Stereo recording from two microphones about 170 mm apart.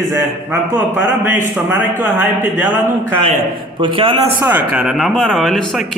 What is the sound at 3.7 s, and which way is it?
Speech, 30° right (ahead or behind).